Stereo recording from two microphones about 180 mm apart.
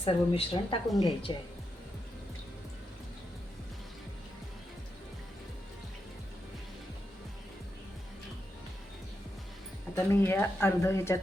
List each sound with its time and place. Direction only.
0.0 s a woman's voice: 30° left (ahead or behind)
9.9 s speech: 15° left (ahead or behind)